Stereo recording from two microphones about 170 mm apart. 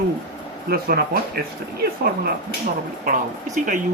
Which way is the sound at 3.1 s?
50° right (ahead or behind).